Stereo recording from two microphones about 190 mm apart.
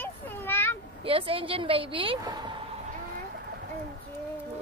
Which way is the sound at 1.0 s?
30° right (ahead or behind).